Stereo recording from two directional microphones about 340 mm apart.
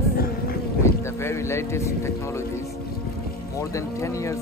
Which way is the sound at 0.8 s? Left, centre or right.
Centre.